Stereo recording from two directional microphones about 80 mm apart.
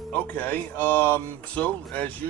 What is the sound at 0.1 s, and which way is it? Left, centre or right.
Speech, centre.